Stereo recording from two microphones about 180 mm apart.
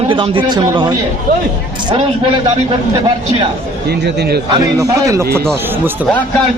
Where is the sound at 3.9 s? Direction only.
65° right (ahead or behind).